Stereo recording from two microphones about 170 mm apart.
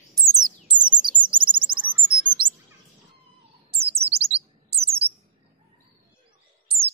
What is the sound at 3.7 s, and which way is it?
Bird, 35° right (ahead or behind).